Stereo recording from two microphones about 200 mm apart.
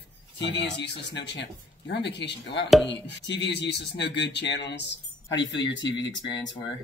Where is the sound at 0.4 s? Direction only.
60° left (ahead or behind).